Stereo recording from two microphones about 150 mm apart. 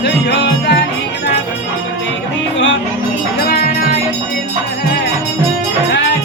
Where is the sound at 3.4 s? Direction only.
90° left.